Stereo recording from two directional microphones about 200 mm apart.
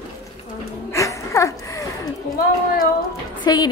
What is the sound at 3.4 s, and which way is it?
Speech, 20° left (ahead or behind).